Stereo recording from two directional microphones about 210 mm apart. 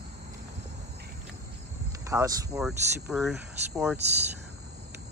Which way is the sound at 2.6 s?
Centre (ahead or behind).